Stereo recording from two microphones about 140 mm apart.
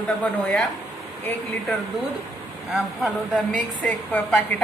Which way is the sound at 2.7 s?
5° right (ahead or behind).